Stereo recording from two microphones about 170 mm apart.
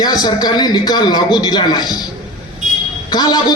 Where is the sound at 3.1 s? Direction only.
25° left (ahead or behind).